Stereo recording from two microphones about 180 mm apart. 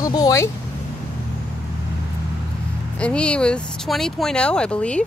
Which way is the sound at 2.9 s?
5° left (ahead or behind).